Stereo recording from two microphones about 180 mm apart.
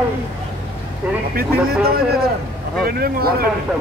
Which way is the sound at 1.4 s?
60° right (ahead or behind).